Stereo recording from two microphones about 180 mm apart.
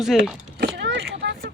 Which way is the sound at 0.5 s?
70° right (ahead or behind).